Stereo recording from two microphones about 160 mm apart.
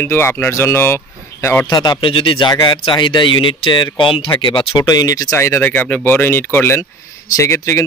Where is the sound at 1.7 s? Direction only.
25° left (ahead or behind).